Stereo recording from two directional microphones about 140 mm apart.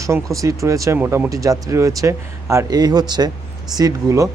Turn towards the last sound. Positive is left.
turn(degrees=-25)  # may be behind; listen again after turning